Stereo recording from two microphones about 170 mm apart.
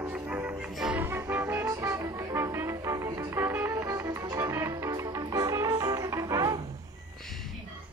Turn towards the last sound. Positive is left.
turn(degrees=-20)  # may be behind; listen again after turning